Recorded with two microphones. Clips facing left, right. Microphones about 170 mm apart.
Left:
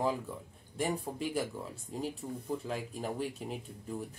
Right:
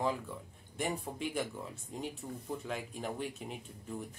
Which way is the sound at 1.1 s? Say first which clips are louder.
Left 3 dB; 25° left (ahead or behind).